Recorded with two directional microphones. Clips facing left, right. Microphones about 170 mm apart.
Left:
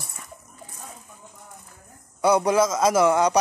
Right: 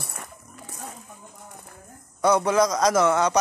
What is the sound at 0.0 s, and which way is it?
Music, 65° right (ahead or behind).